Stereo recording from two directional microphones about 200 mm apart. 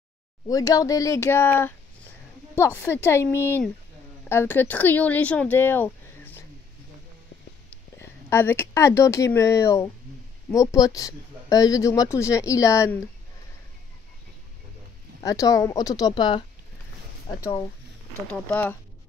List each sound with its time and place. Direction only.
0.5 s speech: 15° left (ahead or behind)
8.0 s speech: 10° left (ahead or behind)
15.2 s speech: 15° left (ahead or behind)
18.3 s speech: 5° left (ahead or behind)